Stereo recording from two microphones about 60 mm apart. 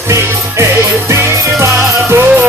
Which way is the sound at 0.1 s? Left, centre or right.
Right.